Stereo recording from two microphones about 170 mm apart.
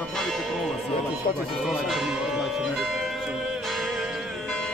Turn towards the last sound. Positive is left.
turn(degrees=0)  # may be behind; listen again after turning